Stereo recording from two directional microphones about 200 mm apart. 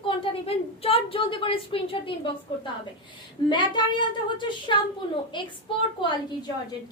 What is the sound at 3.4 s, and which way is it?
A woman's voice, 25° left (ahead or behind).